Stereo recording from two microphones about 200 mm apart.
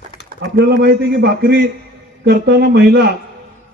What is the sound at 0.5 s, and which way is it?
A man's voice, 50° right (ahead or behind).